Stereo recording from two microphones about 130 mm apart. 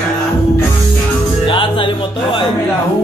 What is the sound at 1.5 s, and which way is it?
Music, 40° left (ahead or behind).